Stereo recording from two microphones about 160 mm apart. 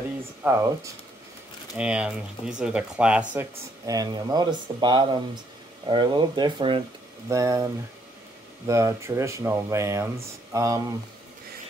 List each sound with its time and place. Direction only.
0.4 s speech: 15° right (ahead or behind)
1.8 s speech: 5° right (ahead or behind)
3.8 s speech: 25° right (ahead or behind)